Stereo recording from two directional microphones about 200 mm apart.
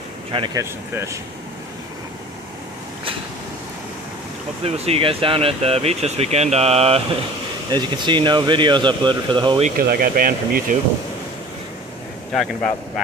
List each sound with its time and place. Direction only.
0.3 s speech: 25° right (ahead or behind)
0.9 s speech: 15° right (ahead or behind)
4.6 s speech: 30° right (ahead or behind)
9.8 s speech: 45° right (ahead or behind)